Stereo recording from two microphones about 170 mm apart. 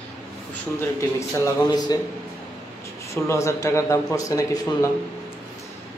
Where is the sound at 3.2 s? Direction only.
15° left (ahead or behind).